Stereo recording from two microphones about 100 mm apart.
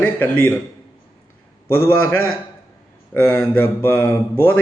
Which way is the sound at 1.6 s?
20° left (ahead or behind).